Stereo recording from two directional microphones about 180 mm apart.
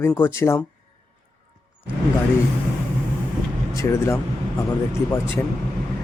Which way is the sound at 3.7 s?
15° left (ahead or behind).